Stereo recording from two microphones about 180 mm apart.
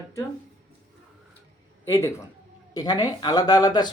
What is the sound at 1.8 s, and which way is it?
Speech, 15° left (ahead or behind).